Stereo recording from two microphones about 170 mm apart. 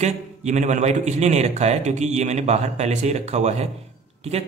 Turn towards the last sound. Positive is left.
turn(degrees=-40)  # may be behind; listen again after turning